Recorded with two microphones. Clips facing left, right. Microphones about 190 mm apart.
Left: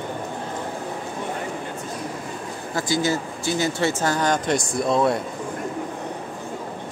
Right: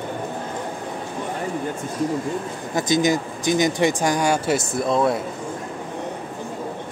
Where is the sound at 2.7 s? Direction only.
20° right (ahead or behind); by 5.2 s centre (ahead or behind).